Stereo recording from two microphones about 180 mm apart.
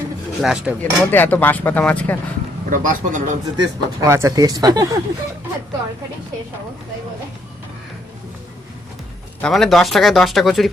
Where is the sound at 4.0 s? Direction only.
15° right (ahead or behind).